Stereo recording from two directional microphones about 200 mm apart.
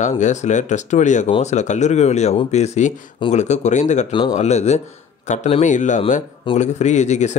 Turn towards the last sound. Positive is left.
turn(degrees=35)  # may be behind; listen again after turning